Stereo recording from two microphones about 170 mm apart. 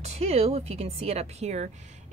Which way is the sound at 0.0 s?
40° right (ahead or behind).